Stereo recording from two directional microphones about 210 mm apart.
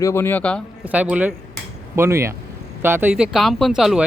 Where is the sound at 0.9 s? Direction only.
5° right (ahead or behind).